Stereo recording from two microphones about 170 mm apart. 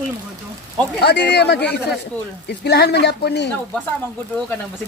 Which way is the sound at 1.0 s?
80° left.